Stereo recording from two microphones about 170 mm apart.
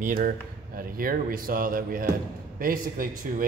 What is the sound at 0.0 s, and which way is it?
Speech, 55° right (ahead or behind).